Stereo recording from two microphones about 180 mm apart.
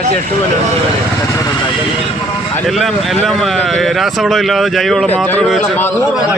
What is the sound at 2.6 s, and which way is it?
Speech, centre (ahead or behind).